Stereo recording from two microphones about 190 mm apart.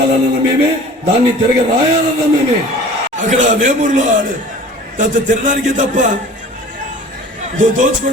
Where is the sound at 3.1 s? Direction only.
40° right (ahead or behind).